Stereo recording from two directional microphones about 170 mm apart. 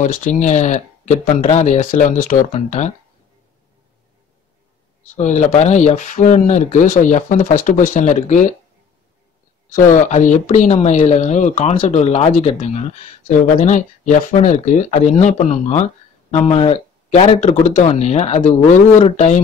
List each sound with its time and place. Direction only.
0.0 s speech: 50° left (ahead or behind)
5.1 s speech: 45° left (ahead or behind)
9.7 s speech: 45° left (ahead or behind)